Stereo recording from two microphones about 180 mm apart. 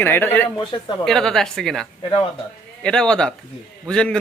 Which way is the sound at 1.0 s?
Centre (ahead or behind).